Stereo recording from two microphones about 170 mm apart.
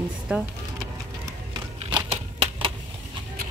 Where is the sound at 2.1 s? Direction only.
30° right (ahead or behind).